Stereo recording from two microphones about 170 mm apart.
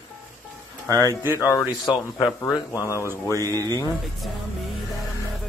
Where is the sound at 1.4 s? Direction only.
20° left (ahead or behind).